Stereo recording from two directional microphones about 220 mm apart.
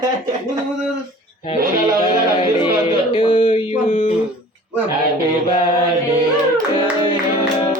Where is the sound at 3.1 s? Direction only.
25° left (ahead or behind).